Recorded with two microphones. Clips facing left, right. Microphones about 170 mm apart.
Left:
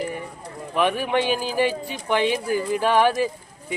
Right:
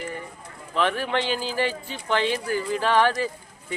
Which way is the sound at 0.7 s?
15° left (ahead or behind).